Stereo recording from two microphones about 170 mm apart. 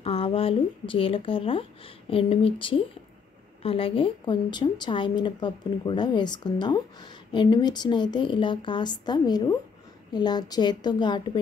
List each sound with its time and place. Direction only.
0.0 s a woman's voice: 35° left (ahead or behind)